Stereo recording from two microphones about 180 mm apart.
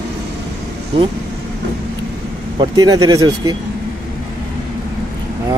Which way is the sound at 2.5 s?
20° right (ahead or behind).